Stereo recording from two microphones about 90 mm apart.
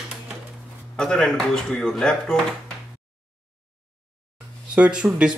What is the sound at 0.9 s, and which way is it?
Speech, 5° left (ahead or behind).